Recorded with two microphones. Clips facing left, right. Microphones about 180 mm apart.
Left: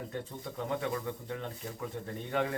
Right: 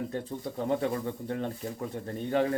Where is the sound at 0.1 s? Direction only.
40° right (ahead or behind).